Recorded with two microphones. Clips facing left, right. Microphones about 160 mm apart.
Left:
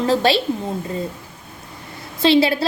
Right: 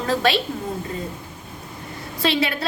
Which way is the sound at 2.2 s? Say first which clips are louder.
Left 7 dB; 30° left (ahead or behind).